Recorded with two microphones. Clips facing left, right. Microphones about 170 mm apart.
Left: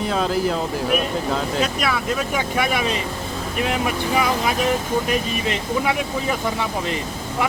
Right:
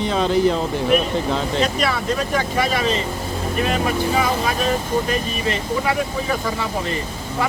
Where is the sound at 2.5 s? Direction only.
15° left (ahead or behind).